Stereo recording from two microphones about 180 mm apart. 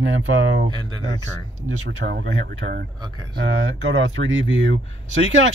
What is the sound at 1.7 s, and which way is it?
Speech, 70° right (ahead or behind).